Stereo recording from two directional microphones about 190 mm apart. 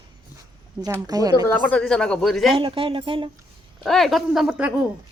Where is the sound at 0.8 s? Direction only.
20° right (ahead or behind).